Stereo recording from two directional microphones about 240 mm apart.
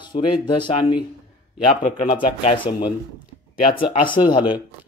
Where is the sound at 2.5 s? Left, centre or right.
Centre.